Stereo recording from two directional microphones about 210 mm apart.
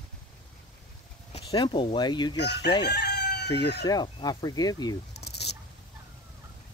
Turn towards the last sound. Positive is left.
turn(degrees=50)  # may be behind; listen again after turning